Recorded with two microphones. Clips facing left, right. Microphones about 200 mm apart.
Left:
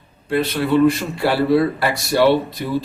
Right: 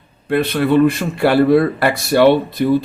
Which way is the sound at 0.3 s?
55° right (ahead or behind).